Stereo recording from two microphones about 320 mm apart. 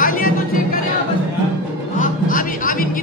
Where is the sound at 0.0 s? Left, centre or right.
Left.